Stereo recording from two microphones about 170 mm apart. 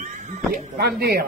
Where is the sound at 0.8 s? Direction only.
65° right (ahead or behind).